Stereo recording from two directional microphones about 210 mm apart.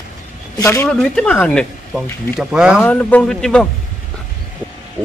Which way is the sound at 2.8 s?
5° left (ahead or behind).